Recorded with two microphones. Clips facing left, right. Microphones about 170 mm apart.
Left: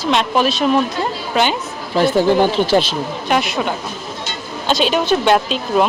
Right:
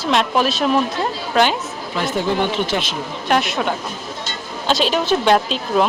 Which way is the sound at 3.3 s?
Centre (ahead or behind).